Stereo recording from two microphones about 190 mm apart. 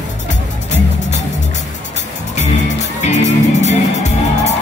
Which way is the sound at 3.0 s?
40° left (ahead or behind).